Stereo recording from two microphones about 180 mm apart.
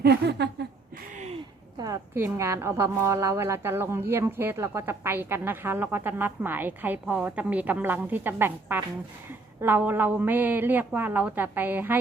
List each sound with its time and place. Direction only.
0.0 s speech: 65° right (ahead or behind)
1.8 s a woman's voice: 15° right (ahead or behind)